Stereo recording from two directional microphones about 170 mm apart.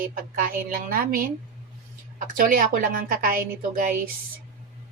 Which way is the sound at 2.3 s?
55° right (ahead or behind).